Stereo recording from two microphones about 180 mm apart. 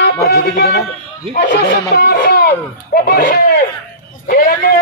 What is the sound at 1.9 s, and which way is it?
Speech, 60° left (ahead or behind).